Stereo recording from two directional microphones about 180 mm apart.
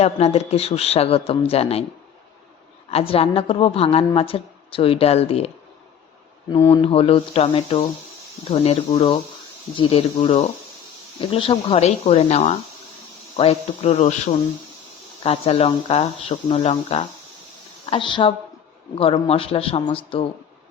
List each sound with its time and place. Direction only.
0.0 s a woman's voice: 35° left (ahead or behind)
2.9 s a woman's voice: 30° left (ahead or behind)
6.8 s a woman's voice: 30° left (ahead or behind)
15.2 s a woman's voice: 35° left (ahead or behind)